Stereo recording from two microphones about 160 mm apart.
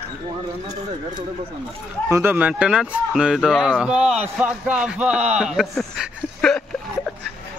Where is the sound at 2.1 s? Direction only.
15° right (ahead or behind); by 6.6 s centre (ahead or behind).